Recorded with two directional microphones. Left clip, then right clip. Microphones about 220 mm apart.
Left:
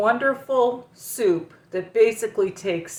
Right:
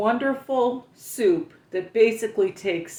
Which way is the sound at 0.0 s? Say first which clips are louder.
Left 3 dB; 10° right (ahead or behind).